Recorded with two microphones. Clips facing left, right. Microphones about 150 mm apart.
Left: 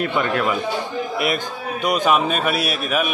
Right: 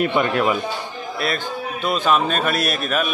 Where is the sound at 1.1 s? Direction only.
15° left (ahead or behind).